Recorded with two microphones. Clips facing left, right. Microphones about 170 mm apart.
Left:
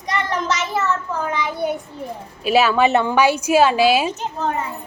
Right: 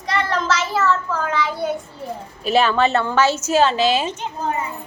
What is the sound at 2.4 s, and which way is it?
A woman's voice, 5° left (ahead or behind).